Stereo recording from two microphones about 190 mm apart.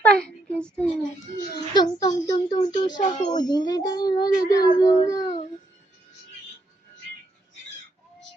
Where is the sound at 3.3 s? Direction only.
20° left (ahead or behind).